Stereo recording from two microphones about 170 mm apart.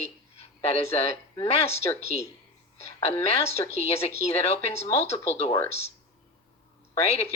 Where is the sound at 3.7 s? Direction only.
40° left (ahead or behind).